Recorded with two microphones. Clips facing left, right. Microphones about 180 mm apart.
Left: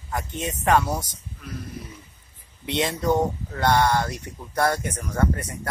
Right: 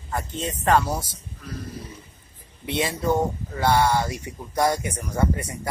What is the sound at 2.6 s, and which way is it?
Speech, 5° right (ahead or behind).